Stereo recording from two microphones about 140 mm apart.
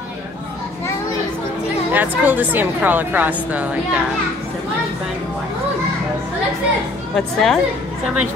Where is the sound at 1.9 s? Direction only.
10° right (ahead or behind).